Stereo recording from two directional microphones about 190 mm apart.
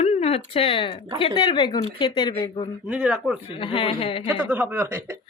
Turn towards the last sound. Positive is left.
turn(degrees=-10)  # may be behind; listen again after turning